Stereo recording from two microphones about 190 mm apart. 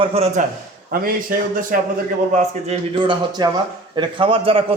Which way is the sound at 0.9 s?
50° right (ahead or behind).